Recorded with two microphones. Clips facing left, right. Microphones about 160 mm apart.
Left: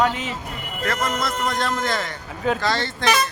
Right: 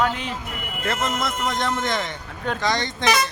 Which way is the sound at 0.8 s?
25° right (ahead or behind).